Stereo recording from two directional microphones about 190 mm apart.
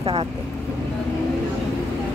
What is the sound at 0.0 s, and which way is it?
Speech, 30° right (ahead or behind).